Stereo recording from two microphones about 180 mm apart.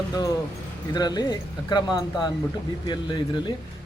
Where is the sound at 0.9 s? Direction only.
20° left (ahead or behind).